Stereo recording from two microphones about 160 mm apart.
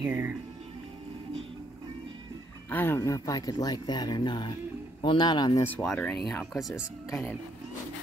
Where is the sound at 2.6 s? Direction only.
10° left (ahead or behind).